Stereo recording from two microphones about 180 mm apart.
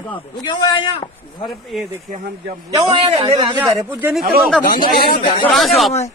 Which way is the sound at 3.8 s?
10° right (ahead or behind).